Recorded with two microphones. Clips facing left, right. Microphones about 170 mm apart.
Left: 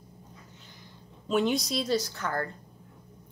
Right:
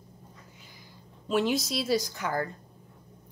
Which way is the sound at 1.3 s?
Centre (ahead or behind).